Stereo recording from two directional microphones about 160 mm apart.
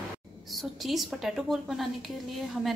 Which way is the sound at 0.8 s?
Centre (ahead or behind).